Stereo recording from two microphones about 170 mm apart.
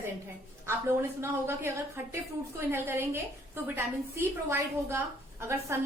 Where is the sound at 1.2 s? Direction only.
15° right (ahead or behind).